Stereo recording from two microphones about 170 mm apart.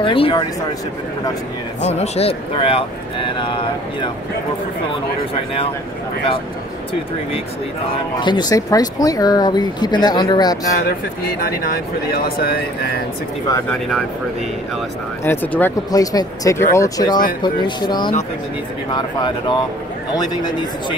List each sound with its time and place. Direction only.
0.0 s speech: 30° left (ahead or behind)
1.8 s speech: 40° left (ahead or behind)
8.2 s speech: 25° left (ahead or behind)
11.4 s speech: 60° left (ahead or behind)
13.7 s speech: centre (ahead or behind)
15.2 s speech: 10° left (ahead or behind)
15.9 s speech: 20° left (ahead or behind)